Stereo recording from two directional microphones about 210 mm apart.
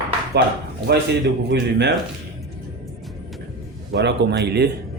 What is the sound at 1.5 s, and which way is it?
Speech, 55° right (ahead or behind).